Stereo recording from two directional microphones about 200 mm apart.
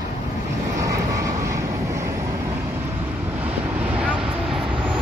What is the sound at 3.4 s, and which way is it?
Vehicle, 5° right (ahead or behind).